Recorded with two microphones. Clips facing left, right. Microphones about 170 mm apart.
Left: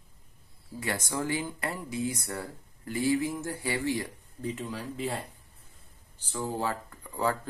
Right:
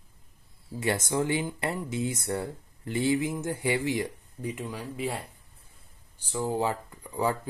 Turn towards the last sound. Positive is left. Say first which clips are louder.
# right 1 dB
turn(degrees=-15)  # may be behind; listen again after turning